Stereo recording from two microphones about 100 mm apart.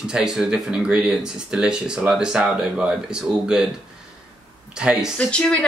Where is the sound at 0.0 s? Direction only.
5° right (ahead or behind).